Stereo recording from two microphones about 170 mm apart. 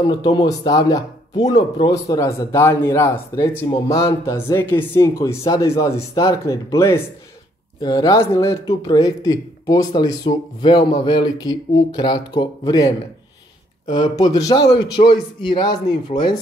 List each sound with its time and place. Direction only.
0.0 s a man's voice: 25° left (ahead or behind)